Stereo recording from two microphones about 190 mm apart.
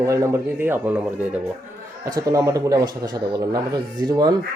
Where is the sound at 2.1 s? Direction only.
20° right (ahead or behind).